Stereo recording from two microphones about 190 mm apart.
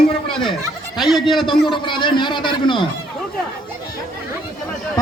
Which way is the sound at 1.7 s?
25° left (ahead or behind).